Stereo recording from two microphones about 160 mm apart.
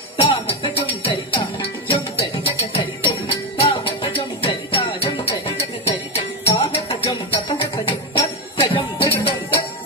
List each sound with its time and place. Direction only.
0.2 s a sound: 35° left (ahead or behind)
1.0 s music: 35° left (ahead or behind)
6.1 s music: 35° left (ahead or behind)